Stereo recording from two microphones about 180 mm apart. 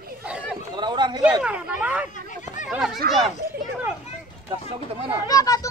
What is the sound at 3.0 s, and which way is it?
Speech, 65° right (ahead or behind).